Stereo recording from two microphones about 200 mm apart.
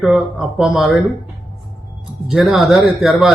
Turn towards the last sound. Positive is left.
turn(degrees=0)  # may be behind; listen again after turning